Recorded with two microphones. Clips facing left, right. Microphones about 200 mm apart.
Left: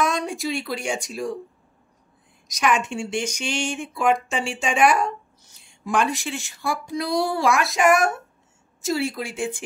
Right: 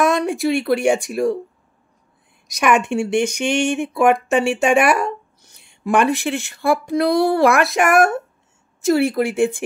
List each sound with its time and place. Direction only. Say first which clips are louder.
0.0 s speech: right 7 dB; 65° right (ahead or behind)
2.4 s speech: right 5 dB; 60° right (ahead or behind)